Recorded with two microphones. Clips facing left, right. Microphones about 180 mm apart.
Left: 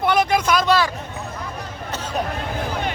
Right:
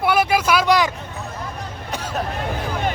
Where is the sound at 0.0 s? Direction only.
5° right (ahead or behind).